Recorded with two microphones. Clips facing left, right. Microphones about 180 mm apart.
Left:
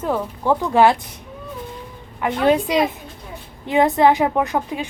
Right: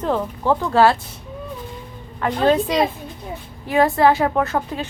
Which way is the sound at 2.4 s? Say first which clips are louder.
Even; 15° left (ahead or behind).